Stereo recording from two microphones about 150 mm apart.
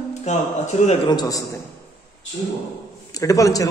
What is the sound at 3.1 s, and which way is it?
Speech, 20° left (ahead or behind).